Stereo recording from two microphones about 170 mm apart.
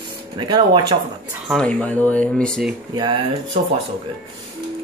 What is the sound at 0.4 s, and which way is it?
Speech, 25° right (ahead or behind).